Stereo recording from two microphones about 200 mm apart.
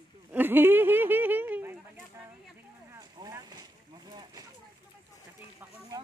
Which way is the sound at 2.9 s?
15° right (ahead or behind).